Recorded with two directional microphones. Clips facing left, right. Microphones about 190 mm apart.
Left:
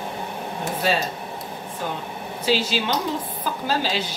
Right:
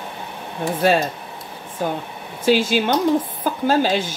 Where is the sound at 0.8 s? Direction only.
50° right (ahead or behind).